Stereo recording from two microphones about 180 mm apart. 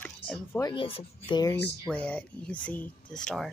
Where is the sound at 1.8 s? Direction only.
5° left (ahead or behind).